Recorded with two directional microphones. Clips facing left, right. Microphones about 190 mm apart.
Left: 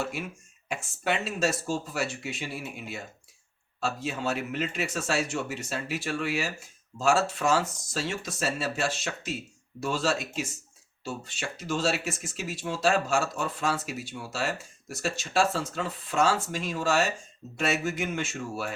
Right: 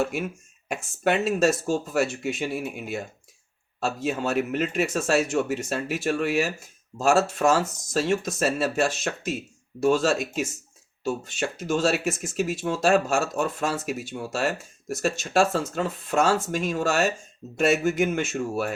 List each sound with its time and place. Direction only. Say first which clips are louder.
0.0 s speech: right 6 dB; 45° right (ahead or behind)